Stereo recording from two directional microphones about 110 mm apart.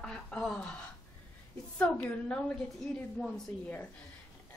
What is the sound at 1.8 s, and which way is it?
Speech, 10° left (ahead or behind).